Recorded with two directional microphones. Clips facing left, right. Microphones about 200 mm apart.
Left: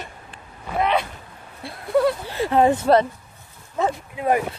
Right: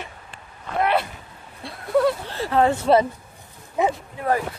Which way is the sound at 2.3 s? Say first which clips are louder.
Left 5 dB; 15° left (ahead or behind).